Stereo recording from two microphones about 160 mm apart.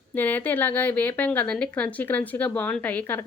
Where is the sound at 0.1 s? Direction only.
10° left (ahead or behind).